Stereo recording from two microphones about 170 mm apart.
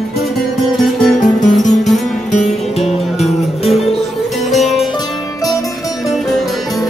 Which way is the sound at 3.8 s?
Centre (ahead or behind).